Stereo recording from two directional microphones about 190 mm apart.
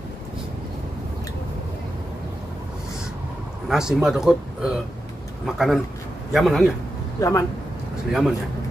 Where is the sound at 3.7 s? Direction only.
5° right (ahead or behind).